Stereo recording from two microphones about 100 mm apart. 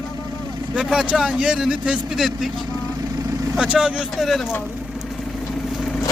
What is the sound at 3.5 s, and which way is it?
Speech, 5° right (ahead or behind).